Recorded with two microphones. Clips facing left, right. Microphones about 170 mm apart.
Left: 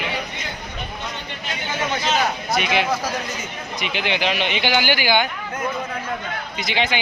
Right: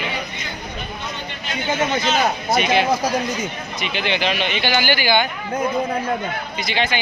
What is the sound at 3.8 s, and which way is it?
Speech, 15° left (ahead or behind).